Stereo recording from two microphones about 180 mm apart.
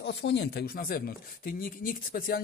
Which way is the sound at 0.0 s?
75° left (ahead or behind).